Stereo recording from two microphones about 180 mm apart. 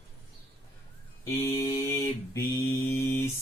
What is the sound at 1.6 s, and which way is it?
Mantra, 15° left (ahead or behind).